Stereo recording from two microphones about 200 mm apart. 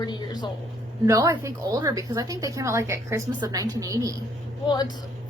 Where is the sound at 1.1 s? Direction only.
15° right (ahead or behind).